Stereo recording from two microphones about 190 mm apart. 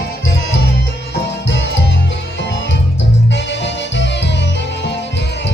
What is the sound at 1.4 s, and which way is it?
Music, 70° left (ahead or behind).